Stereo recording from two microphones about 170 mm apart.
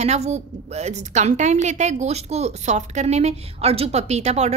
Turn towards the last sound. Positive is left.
turn(degrees=-40)  # may be behind; listen again after turning